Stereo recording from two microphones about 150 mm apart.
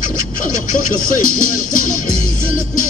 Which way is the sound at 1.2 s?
65° left (ahead or behind).